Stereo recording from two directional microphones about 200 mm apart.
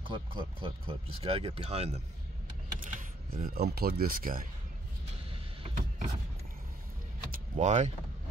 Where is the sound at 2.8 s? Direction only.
45° right (ahead or behind).